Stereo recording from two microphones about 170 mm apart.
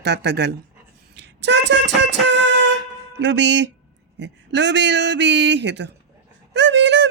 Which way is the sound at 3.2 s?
90° right.